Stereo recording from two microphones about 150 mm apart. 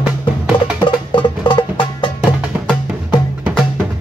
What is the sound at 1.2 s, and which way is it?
Music, 35° left (ahead or behind).